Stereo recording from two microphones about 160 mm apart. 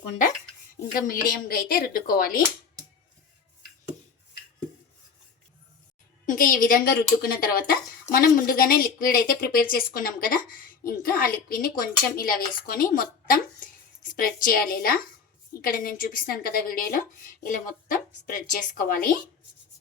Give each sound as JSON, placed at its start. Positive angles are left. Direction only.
{"t": 0.9, "sound": "speech", "side_deg": 60}
{"t": 6.2, "sound": "speech", "side_deg": 60}